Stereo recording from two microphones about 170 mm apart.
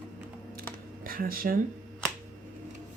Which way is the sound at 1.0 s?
60° right (ahead or behind).